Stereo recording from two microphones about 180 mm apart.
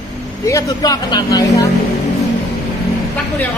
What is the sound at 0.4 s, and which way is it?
Speech, 20° left (ahead or behind).